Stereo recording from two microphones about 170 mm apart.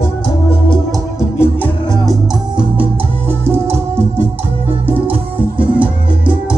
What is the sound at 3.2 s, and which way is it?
Music, 15° right (ahead or behind).